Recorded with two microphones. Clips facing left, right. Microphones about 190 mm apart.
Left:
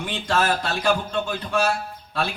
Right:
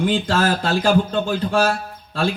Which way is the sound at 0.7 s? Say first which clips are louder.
Right 5 dB; 30° right (ahead or behind).